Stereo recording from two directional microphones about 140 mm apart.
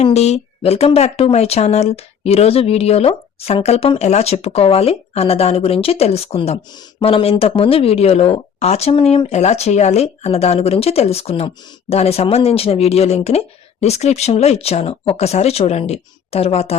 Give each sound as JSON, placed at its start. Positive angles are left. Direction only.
{"t": 0.0, "sound": "speech", "side_deg": 50}